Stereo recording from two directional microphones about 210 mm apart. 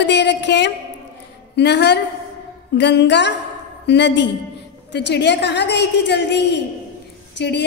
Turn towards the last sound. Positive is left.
turn(degrees=55)  # may be behind; listen again after turning